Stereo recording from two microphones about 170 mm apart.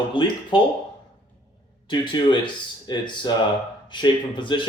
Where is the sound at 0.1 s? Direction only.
30° left (ahead or behind).